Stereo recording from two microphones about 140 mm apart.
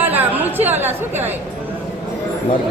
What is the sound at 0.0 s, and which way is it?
Chatter, 15° right (ahead or behind).